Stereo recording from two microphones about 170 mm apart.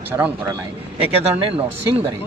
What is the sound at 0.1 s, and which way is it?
Speech, 15° right (ahead or behind).